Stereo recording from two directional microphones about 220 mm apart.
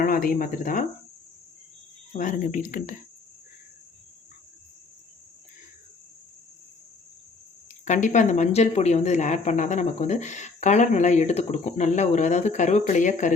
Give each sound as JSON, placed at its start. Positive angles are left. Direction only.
{"t": 0.0, "sound": "speech", "side_deg": 40}
{"t": 2.1, "sound": "speech", "side_deg": 35}
{"t": 7.9, "sound": "speech", "side_deg": 35}